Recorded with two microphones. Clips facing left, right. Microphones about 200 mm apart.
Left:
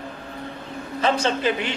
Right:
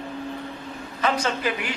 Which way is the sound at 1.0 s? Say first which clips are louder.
Left 3 dB; 25° left (ahead or behind).